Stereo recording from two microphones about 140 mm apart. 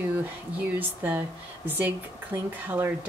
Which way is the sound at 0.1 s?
10° right (ahead or behind).